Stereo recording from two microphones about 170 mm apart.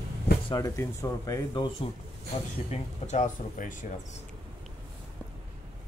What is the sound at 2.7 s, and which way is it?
Speech, 45° left (ahead or behind).